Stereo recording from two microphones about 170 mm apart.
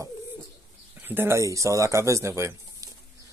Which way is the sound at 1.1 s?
15° right (ahead or behind).